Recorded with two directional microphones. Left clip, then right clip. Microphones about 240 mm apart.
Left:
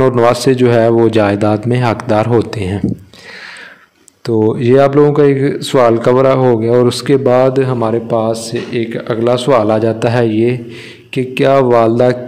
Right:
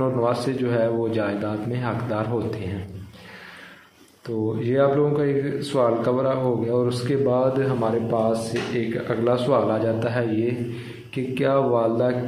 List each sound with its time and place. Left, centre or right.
0.0 s a man's voice: left
4.6 s a man's voice: left